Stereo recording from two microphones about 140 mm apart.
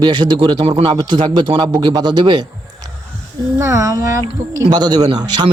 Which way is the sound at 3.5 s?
20° right (ahead or behind).